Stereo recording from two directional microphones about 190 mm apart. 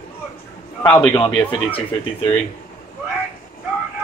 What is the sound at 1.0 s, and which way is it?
A man's voice, 25° left (ahead or behind).